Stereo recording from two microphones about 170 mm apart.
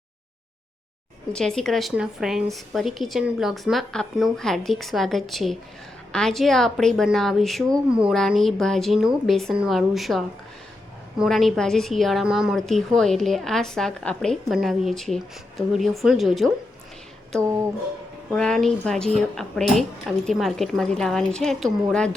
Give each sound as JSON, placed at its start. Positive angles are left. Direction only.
{"t": 1.3, "sound": "a woman's voice", "side_deg": 5}
{"t": 18.3, "sound": "a woman's voice", "side_deg": 5}